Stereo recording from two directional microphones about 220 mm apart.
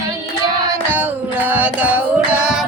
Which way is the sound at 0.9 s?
5° right (ahead or behind).